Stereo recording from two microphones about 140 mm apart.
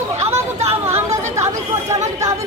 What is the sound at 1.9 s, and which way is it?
Speech, 25° right (ahead or behind).